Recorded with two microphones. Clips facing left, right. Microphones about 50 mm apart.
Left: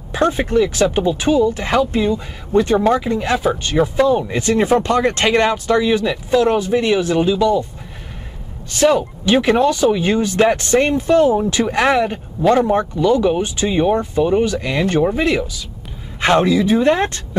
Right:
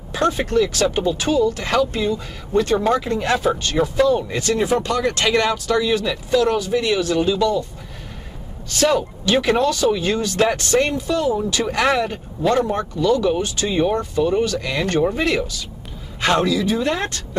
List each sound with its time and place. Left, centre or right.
0.1 s speech: centre
8.7 s speech: centre
16.2 s speech: left